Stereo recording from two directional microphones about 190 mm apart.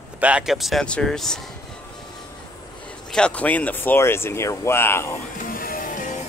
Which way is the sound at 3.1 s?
5° left (ahead or behind).